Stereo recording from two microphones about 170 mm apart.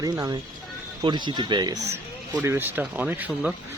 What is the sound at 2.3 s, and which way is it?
Speech, 10° right (ahead or behind).